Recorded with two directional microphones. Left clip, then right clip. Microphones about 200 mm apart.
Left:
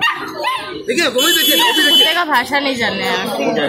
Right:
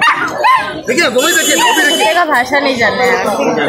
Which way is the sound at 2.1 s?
40° left (ahead or behind).